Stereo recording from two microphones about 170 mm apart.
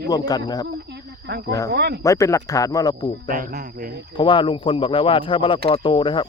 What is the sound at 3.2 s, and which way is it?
Speech, 55° right (ahead or behind).